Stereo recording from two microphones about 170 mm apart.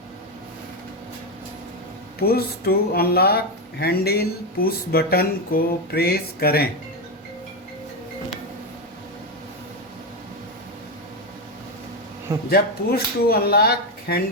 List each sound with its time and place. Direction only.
2.1 s speech: 65° left (ahead or behind)
12.5 s speech: 65° left (ahead or behind)